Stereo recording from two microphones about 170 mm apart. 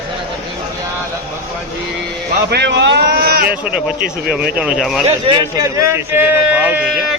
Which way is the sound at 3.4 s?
10° right (ahead or behind).